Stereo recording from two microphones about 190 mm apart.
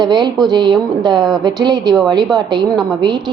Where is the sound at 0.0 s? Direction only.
20° right (ahead or behind).